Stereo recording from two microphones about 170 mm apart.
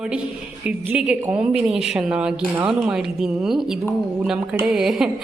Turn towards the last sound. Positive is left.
turn(degrees=0)  # may be behind; listen again after turning